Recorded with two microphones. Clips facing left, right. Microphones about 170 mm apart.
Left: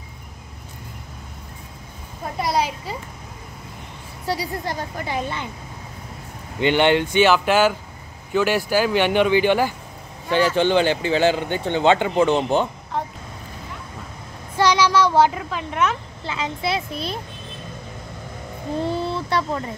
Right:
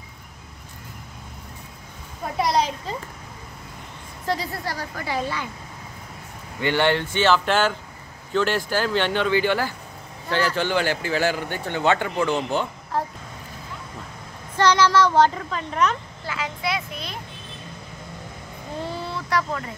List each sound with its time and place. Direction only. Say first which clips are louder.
2.3 s a sound: right 1 dB; centre (ahead or behind)
4.3 s speech: left 1 dB; 15° left (ahead or behind)
6.6 s a man's voice: left 4 dB; 20° left (ahead or behind)
12.9 s vehicle: right 1 dB; centre (ahead or behind)
14.6 s a woman's voice: left 1 dB; 10° left (ahead or behind)
16.3 s speech: left 3 dB; 25° left (ahead or behind)
19.0 s speech: left 2 dB; 30° left (ahead or behind)